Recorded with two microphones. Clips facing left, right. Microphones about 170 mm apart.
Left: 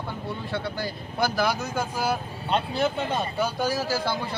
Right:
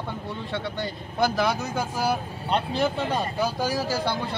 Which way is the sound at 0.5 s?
Centre (ahead or behind).